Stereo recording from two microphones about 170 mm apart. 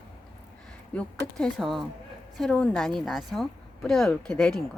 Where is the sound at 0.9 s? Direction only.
5° left (ahead or behind).